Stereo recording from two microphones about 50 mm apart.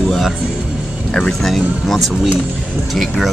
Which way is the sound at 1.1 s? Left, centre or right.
Centre.